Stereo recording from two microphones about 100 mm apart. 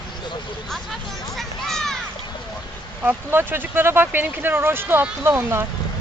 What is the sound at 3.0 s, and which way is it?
Speech, 20° right (ahead or behind).